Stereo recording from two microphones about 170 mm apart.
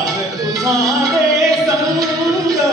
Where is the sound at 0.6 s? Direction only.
20° right (ahead or behind).